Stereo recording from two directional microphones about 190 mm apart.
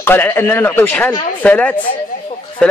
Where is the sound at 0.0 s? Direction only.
10° left (ahead or behind).